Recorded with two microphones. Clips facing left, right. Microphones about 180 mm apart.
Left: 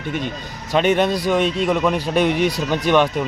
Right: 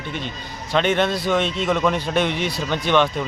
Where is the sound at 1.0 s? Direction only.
15° left (ahead or behind).